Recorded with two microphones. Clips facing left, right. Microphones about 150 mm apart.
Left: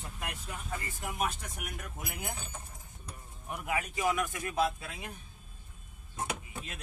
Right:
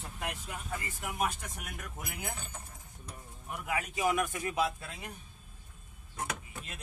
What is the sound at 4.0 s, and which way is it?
Speech, 30° right (ahead or behind).